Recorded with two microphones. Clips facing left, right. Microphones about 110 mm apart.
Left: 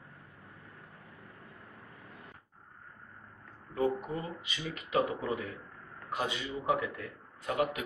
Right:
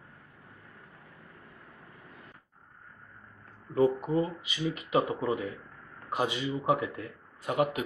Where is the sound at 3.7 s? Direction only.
50° right (ahead or behind).